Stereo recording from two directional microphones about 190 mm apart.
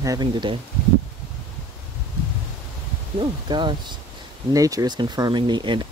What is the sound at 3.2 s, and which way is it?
Speech, 25° right (ahead or behind).